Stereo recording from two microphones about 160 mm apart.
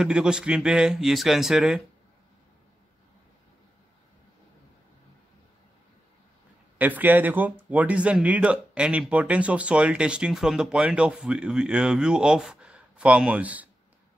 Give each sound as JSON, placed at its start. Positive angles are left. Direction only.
{"t": 0.0, "sound": "speech", "side_deg": -5}
{"t": 6.8, "sound": "speech", "side_deg": -10}